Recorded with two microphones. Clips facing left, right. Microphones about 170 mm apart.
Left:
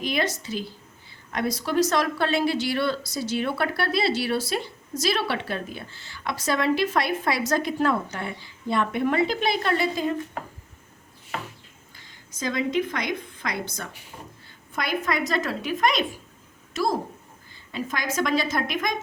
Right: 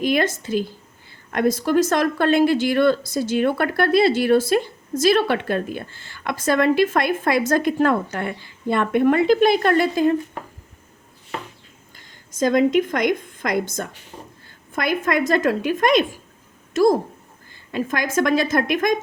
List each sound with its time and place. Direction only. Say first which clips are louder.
0.0 s speech: right 6 dB; 50° right (ahead or behind)
12.4 s speech: right 8 dB; 50° right (ahead or behind)